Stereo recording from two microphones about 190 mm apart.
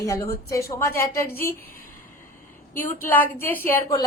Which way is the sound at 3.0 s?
10° left (ahead or behind).